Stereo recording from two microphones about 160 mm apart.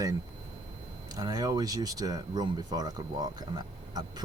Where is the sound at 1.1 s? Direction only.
25° right (ahead or behind).